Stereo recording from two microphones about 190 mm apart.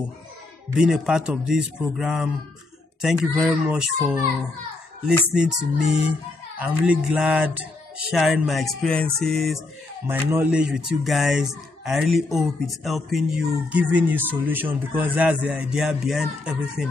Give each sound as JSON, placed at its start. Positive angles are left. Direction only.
{"t": 0.7, "sound": "speech", "side_deg": -5}
{"t": 10.0, "sound": "speech", "side_deg": -10}